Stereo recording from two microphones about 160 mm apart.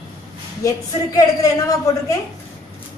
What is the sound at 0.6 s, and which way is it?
A woman's voice, 20° left (ahead or behind).